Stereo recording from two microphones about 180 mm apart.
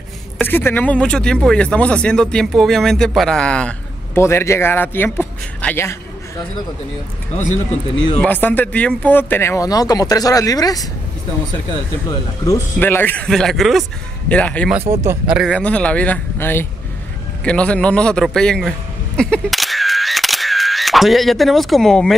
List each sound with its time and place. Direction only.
0.4 s a man's voice: 10° left (ahead or behind)
8.2 s speech: 10° left (ahead or behind)
12.1 s speech: 15° left (ahead or behind)
14.7 s speech: 15° right (ahead or behind)
15.3 s a man's voice: 5° left (ahead or behind)